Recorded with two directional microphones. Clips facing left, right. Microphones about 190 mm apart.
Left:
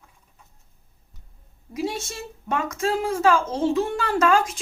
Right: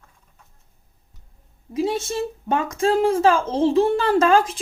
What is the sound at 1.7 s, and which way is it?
A woman's voice, 30° right (ahead or behind).